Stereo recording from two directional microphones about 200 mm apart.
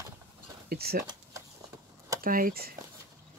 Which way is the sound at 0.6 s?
50° right (ahead or behind).